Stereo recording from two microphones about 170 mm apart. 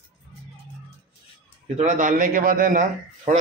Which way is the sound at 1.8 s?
45° right (ahead or behind).